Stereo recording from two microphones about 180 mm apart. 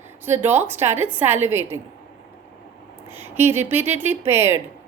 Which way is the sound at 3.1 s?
15° right (ahead or behind).